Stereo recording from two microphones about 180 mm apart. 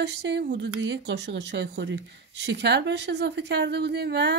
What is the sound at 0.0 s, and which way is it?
Speech, 70° right (ahead or behind).